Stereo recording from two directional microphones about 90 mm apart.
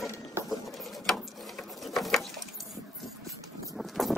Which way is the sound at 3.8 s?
Centre (ahead or behind).